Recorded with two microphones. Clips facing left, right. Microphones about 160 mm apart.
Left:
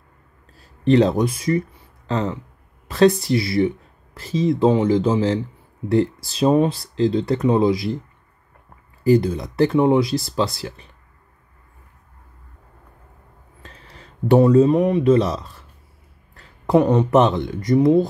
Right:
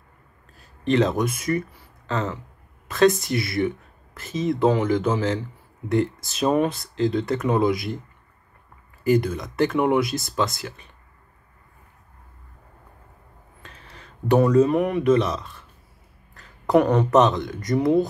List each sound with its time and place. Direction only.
0.6 s speech: 30° left (ahead or behind)
9.0 s speech: 30° left (ahead or behind)
13.6 s speech: 30° left (ahead or behind)